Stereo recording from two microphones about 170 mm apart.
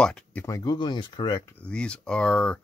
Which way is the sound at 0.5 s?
25° left (ahead or behind).